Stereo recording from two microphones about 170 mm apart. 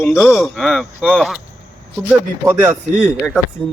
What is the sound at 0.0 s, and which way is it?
Speech, 15° left (ahead or behind).